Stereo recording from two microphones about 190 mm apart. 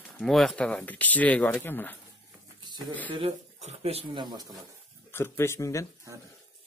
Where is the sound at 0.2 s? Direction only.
Centre (ahead or behind).